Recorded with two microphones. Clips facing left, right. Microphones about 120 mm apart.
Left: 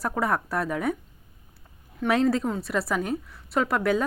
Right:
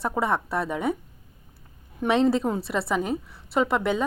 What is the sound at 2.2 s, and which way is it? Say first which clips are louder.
Speech: right 2 dB; 25° right (ahead or behind).